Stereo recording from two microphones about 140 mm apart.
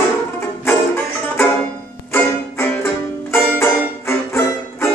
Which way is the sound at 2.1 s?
15° left (ahead or behind).